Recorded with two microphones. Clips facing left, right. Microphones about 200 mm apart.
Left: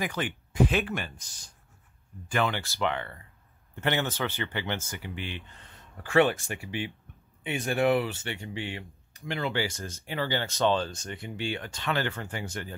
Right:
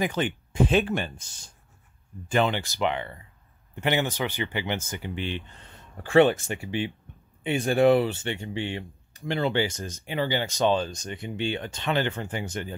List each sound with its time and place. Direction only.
0.0 s speech: 25° right (ahead or behind)